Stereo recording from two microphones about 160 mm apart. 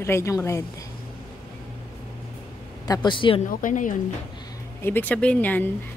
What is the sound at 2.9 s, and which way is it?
Speech, 30° left (ahead or behind).